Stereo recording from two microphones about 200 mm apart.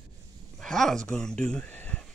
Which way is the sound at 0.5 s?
Centre (ahead or behind).